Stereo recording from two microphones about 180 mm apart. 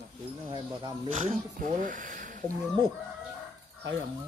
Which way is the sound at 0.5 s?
25° right (ahead or behind).